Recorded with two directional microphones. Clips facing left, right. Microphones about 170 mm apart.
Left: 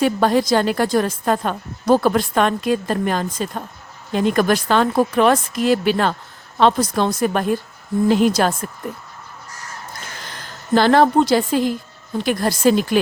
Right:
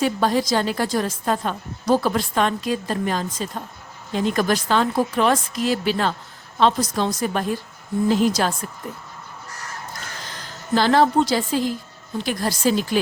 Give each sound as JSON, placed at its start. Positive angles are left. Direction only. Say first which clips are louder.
{"t": 0.0, "sound": "a woman's voice", "louder": "left 4 dB", "side_deg": 60}
{"t": 10.3, "sound": "a woman's voice", "louder": "left 4 dB", "side_deg": 55}